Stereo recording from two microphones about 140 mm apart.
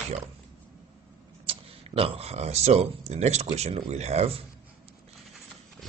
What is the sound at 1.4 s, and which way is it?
Speech, 45° right (ahead or behind).